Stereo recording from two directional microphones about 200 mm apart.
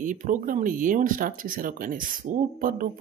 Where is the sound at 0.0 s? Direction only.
40° right (ahead or behind).